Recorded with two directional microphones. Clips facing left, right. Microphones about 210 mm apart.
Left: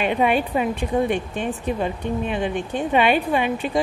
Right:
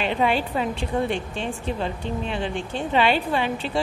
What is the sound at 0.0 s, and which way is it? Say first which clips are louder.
Speech: left 3 dB; 15° left (ahead or behind).